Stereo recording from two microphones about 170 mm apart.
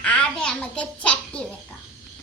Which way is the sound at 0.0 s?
5° left (ahead or behind).